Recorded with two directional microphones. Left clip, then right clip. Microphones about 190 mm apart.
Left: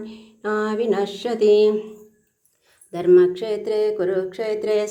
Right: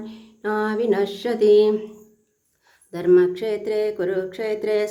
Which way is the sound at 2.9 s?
10° right (ahead or behind).